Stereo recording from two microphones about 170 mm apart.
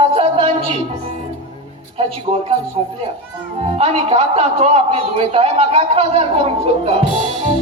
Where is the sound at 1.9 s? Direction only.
35° right (ahead or behind).